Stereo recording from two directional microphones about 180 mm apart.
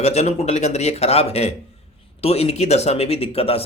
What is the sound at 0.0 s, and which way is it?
Speech, 35° left (ahead or behind).